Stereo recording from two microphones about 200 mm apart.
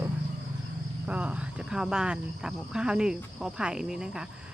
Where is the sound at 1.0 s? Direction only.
5° right (ahead or behind).